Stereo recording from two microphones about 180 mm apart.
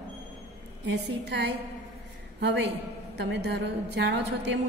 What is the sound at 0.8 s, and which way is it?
Speech, 70° right (ahead or behind).